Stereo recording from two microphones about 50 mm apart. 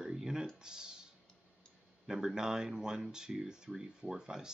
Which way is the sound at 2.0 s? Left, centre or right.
Centre.